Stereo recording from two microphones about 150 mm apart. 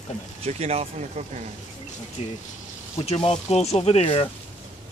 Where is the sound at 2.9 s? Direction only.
40° left (ahead or behind).